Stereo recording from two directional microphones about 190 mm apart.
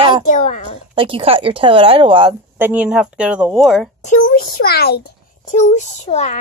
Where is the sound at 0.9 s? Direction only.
25° right (ahead or behind).